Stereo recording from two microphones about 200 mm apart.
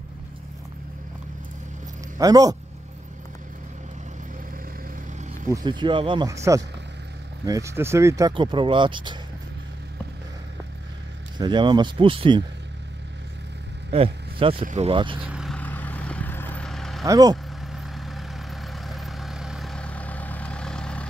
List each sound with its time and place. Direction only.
2.1 s speech: 15° right (ahead or behind)
5.5 s speech: 20° right (ahead or behind)
11.3 s speech: 20° right (ahead or behind)
13.9 s speech: 25° right (ahead or behind)
15.2 s vehicle: 5° right (ahead or behind)
15.5 s vehicle: 10° left (ahead or behind)
17.0 s speech: 15° right (ahead or behind)
17.7 s vehicle: centre (ahead or behind)